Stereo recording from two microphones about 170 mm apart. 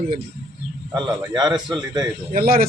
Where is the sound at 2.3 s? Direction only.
60° right (ahead or behind).